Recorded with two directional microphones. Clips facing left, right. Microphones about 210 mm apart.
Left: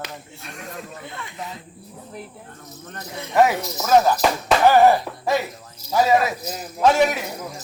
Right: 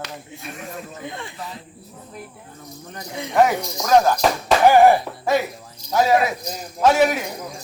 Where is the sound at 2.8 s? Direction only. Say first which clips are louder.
Even; 10° right (ahead or behind).